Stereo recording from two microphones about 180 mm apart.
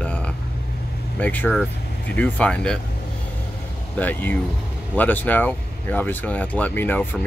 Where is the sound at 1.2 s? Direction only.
10° left (ahead or behind).